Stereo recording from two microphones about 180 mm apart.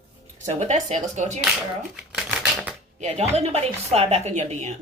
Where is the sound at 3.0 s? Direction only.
40° right (ahead or behind).